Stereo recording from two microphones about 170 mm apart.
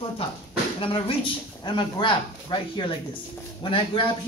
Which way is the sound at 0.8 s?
30° left (ahead or behind).